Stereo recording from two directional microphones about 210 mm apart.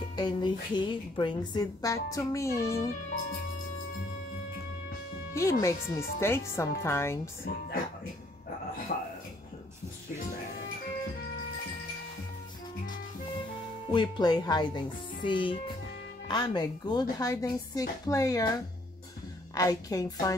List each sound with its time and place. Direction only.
0.1 s a woman's voice: 20° left (ahead or behind)
5.3 s a woman's voice: 15° left (ahead or behind)
8.9 s a sound: 30° left (ahead or behind)
13.8 s a woman's voice: 20° left (ahead or behind)